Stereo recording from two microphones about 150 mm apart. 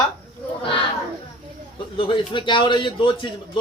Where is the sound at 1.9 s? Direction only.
35° left (ahead or behind).